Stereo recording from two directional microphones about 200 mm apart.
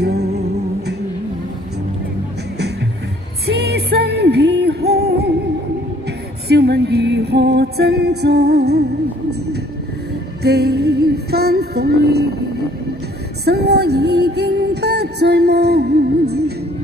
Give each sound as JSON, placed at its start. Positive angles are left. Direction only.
{"t": 0.0, "sound": "music", "side_deg": -55}
{"t": 3.4, "sound": "music", "side_deg": -55}
{"t": 6.5, "sound": "music", "side_deg": -55}
{"t": 10.4, "sound": "music", "side_deg": -55}
{"t": 13.5, "sound": "music", "side_deg": -55}